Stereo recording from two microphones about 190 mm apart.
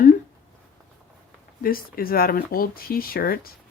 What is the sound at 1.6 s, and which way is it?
Speech, 50° left (ahead or behind).